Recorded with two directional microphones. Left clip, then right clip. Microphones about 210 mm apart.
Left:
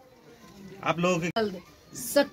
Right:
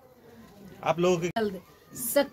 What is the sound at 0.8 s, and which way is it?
Speech, 55° right (ahead or behind).